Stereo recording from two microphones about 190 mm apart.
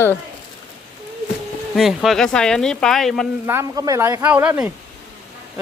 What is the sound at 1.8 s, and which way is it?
Speech, centre (ahead or behind).